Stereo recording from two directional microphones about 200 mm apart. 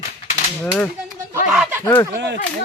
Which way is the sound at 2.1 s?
60° right (ahead or behind).